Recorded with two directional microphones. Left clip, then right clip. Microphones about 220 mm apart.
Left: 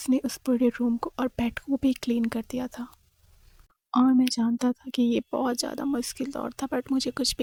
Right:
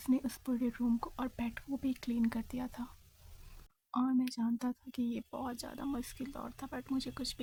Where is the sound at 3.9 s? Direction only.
40° left (ahead or behind).